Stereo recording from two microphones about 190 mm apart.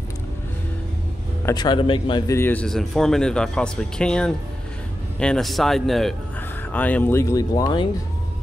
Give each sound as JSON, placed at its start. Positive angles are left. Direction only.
{"t": 1.4, "sound": "a man's voice", "side_deg": 20}